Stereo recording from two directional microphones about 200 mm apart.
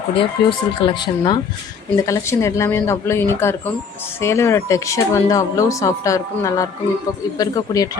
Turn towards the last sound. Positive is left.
turn(degrees=20)  # may be behind; listen again after turning